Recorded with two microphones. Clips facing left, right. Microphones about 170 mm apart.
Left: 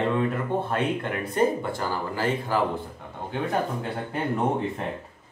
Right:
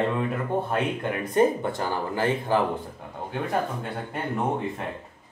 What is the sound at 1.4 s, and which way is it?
Speech, 20° right (ahead or behind).